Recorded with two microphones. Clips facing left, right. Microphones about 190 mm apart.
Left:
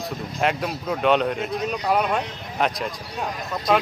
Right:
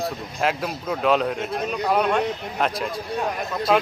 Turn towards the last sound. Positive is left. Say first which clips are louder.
# right 1 dB
turn(degrees=0)  # may be behind; listen again after turning